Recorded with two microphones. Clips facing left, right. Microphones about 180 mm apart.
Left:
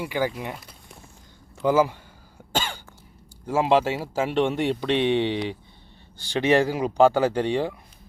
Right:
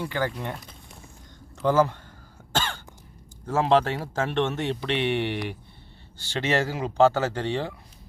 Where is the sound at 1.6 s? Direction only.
10° left (ahead or behind).